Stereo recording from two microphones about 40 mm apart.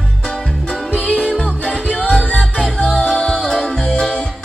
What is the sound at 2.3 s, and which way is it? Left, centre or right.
Music, left.